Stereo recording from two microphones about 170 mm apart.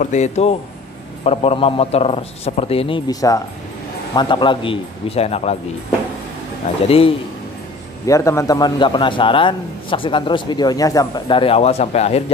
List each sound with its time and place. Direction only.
0.0 s a man's voice: 45° left (ahead or behind)
3.1 s a man's voice: 20° left (ahead or behind); by 5.6 s 35° left (ahead or behind)
6.9 s a man's voice: 35° left (ahead or behind)
8.1 s a man's voice: 15° left (ahead or behind); by 12.2 s 40° left (ahead or behind)